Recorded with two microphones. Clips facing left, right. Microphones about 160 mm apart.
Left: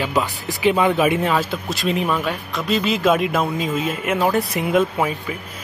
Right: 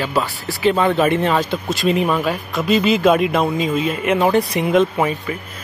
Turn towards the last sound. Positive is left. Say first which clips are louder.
# right 2 dB
turn(degrees=5)  # may be behind; listen again after turning